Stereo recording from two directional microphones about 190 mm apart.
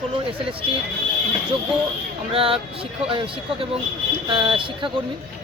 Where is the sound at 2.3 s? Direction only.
30° right (ahead or behind).